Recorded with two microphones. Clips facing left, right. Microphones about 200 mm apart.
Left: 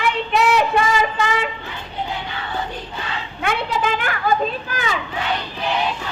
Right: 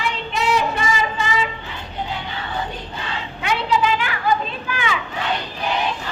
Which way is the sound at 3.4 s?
50° left (ahead or behind).